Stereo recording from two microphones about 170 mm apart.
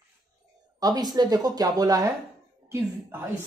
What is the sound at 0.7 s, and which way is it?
A woman's voice, 25° right (ahead or behind).